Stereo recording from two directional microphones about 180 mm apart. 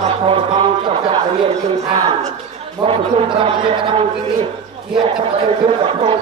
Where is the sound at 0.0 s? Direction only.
30° right (ahead or behind).